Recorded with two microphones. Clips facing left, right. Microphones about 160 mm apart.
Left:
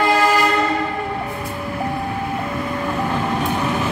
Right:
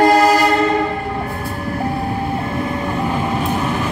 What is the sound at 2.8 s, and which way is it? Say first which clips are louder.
Train: right 2 dB; 10° right (ahead or behind).